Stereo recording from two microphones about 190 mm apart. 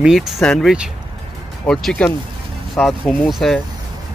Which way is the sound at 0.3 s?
Centre (ahead or behind).